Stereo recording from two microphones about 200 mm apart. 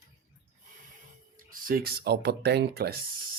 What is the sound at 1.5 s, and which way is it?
Speech, 45° right (ahead or behind).